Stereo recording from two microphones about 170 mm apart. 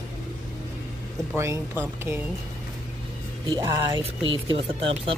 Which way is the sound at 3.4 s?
30° right (ahead or behind).